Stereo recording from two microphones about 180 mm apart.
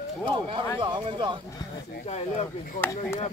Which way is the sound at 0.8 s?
25° right (ahead or behind).